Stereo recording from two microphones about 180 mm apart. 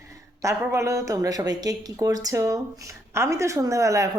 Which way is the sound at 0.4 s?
15° right (ahead or behind).